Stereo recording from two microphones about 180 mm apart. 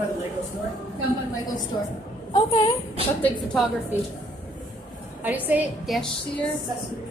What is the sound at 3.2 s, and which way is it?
Speech, 5° left (ahead or behind).